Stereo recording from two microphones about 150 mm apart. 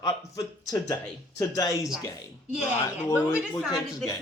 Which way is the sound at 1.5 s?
25° left (ahead or behind).